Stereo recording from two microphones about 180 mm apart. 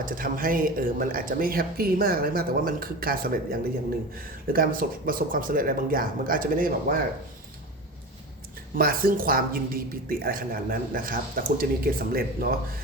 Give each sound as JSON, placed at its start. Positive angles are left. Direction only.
{"t": 0.0, "sound": "speech", "side_deg": -50}
{"t": 8.7, "sound": "speech", "side_deg": -55}